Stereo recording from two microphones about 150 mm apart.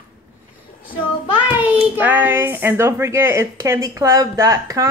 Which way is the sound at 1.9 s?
15° right (ahead or behind).